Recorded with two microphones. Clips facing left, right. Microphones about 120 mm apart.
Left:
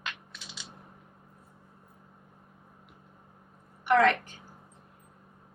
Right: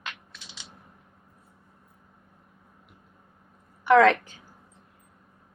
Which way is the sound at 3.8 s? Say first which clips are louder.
Right 5 dB; 90° right.